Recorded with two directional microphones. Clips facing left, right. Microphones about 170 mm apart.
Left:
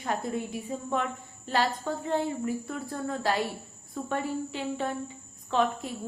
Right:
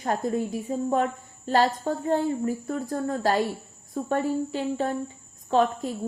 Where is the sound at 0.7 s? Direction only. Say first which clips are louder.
Right 6 dB; 40° right (ahead or behind).